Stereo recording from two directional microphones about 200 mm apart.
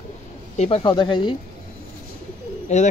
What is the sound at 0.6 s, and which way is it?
Speech, 30° left (ahead or behind).